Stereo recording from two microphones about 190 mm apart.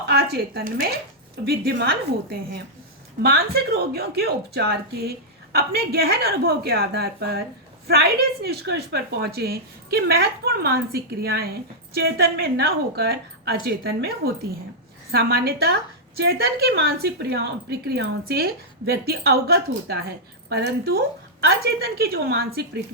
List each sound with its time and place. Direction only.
0.0 s a woman's voice: 60° right (ahead or behind)
3.2 s a woman's voice: 55° right (ahead or behind)
15.1 s a woman's voice: 55° right (ahead or behind)